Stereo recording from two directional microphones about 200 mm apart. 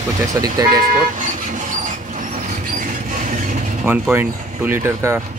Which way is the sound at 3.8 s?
10° right (ahead or behind).